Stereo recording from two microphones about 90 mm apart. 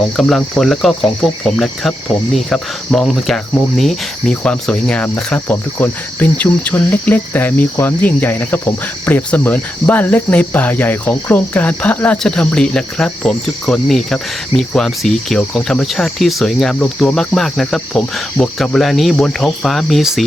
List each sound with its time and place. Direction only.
0.2 s cricket: 5° left (ahead or behind)